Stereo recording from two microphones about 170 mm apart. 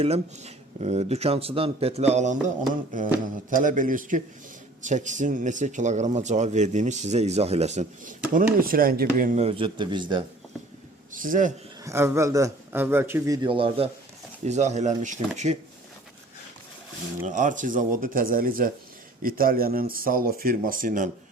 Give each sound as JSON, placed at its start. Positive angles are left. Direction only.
{"t": 0.0, "sound": "speech", "side_deg": -40}
{"t": 3.5, "sound": "speech", "side_deg": -50}
{"t": 8.3, "sound": "speech", "side_deg": -55}
{"t": 9.4, "sound": "speech", "side_deg": -30}
{"t": 11.1, "sound": "a man's voice", "side_deg": -50}
{"t": 11.8, "sound": "a man's voice", "side_deg": -15}
{"t": 17.2, "sound": "speech", "side_deg": -50}